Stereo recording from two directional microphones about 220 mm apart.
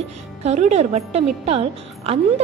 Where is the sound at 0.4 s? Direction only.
30° right (ahead or behind).